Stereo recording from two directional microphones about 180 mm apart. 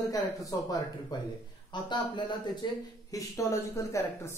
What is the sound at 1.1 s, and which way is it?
Speech, 20° left (ahead or behind).